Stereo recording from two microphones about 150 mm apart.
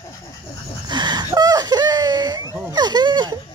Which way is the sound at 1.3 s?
25° right (ahead or behind).